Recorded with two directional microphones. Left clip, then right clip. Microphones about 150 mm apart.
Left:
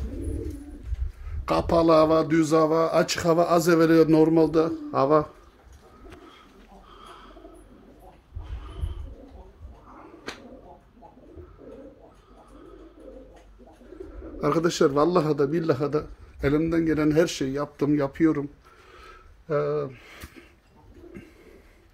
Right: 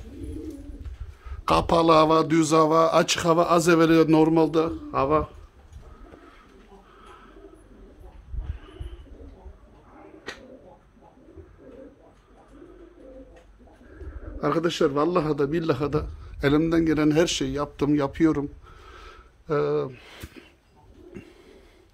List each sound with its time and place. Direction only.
1.4 s mantra: 30° right (ahead or behind); by 4.7 s centre (ahead or behind)
4.9 s speech: 20° left (ahead or behind)
6.9 s bird: 25° left (ahead or behind)
14.4 s a sound: 15° left (ahead or behind)
14.8 s speech: 20° left (ahead or behind)
15.3 s a man's voice: centre (ahead or behind)
16.3 s a man's voice: 30° right (ahead or behind)
18.9 s a sound: 40° right (ahead or behind)
21.1 s bird: 35° right (ahead or behind)